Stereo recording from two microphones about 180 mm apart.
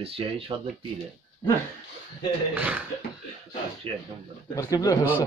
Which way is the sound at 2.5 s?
10° right (ahead or behind).